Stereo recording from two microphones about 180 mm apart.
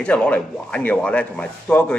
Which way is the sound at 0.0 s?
5° left (ahead or behind).